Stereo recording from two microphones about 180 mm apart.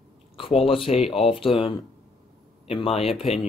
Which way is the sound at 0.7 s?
30° left (ahead or behind).